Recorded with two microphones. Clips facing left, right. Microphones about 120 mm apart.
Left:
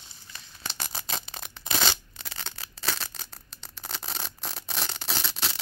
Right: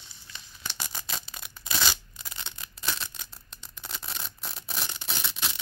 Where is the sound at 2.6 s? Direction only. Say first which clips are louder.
Left 2 dB; 30° left (ahead or behind).